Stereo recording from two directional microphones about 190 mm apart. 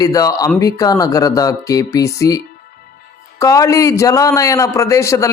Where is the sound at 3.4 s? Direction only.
15° left (ahead or behind).